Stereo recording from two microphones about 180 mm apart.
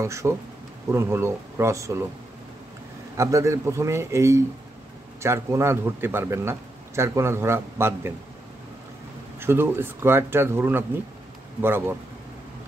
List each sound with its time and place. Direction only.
0.0 s speech: 15° right (ahead or behind)
3.2 s speech: 15° right (ahead or behind)
9.4 s speech: 10° right (ahead or behind)